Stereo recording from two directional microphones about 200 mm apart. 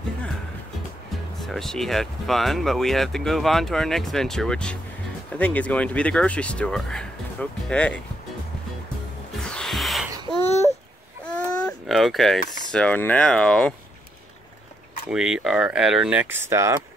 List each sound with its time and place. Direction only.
1.4 s speech: centre (ahead or behind)
9.4 s music: 5° left (ahead or behind)
10.3 s babbling: 30° left (ahead or behind)
11.2 s baby cry: 5° left (ahead or behind)
12.7 s speech: 5° left (ahead or behind)
15.0 s speech: 5° right (ahead or behind)